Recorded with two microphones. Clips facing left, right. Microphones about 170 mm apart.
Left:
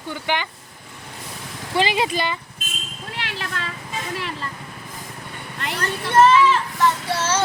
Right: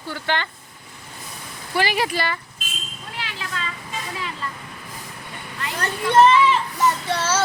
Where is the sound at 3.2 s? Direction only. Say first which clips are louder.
Left 1 dB; 65° left (ahead or behind).